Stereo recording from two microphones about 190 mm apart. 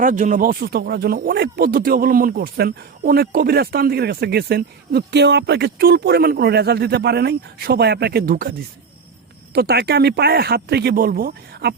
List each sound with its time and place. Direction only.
0.0 s speech: 40° right (ahead or behind)
9.6 s speech: 55° right (ahead or behind)